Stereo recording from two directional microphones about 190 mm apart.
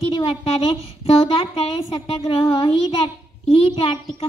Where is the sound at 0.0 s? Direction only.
30° left (ahead or behind).